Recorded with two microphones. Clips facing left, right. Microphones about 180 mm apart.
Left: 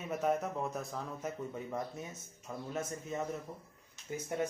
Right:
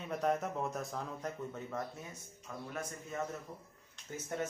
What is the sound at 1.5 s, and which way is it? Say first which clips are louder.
A man's voice: left 2 dB; 15° left (ahead or behind).